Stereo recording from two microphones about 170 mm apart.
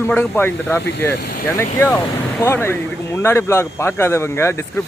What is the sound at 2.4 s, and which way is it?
Speech, 15° left (ahead or behind).